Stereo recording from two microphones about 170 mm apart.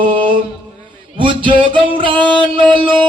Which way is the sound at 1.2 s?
30° right (ahead or behind).